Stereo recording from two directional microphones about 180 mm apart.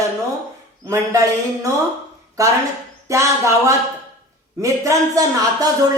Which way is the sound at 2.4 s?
20° right (ahead or behind).